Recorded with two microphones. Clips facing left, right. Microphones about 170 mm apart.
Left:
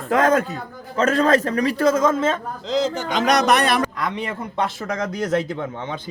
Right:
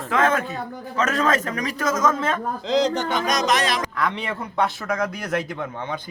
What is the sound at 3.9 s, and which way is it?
A man's voice, 20° left (ahead or behind).